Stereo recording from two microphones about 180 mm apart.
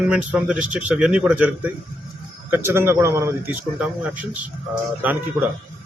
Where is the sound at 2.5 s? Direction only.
10° right (ahead or behind).